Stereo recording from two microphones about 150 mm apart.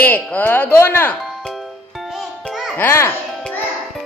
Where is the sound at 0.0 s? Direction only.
10° left (ahead or behind).